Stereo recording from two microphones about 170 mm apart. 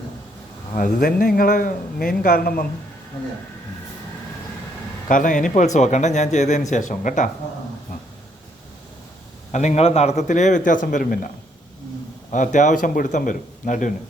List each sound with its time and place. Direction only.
0.8 s a man's voice: 60° left (ahead or behind)
5.0 s speech: 50° left (ahead or behind)
9.5 s speech: 45° left (ahead or behind)
12.3 s speech: 45° left (ahead or behind)